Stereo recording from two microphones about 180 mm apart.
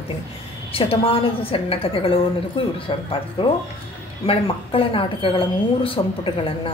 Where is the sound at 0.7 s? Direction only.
30° left (ahead or behind).